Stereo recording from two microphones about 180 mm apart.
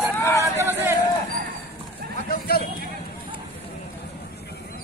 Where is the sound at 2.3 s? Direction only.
60° left (ahead or behind).